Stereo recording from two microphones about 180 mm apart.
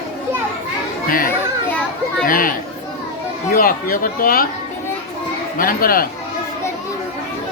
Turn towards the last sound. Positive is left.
turn(degrees=55)  # may be behind; listen again after turning